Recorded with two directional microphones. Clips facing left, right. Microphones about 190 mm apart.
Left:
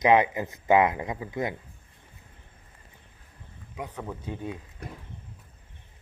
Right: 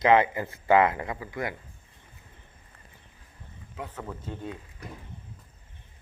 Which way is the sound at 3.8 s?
15° left (ahead or behind).